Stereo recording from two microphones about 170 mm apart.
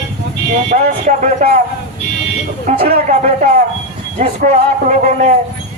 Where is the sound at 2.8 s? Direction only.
35° right (ahead or behind).